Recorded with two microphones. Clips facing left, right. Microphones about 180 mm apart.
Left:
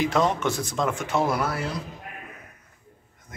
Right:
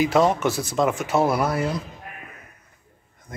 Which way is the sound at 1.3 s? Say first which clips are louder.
Right 4 dB; 20° right (ahead or behind).